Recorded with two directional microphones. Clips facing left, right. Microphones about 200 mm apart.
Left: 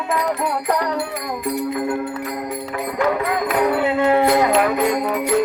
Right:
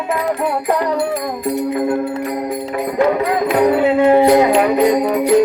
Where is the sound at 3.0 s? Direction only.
25° right (ahead or behind).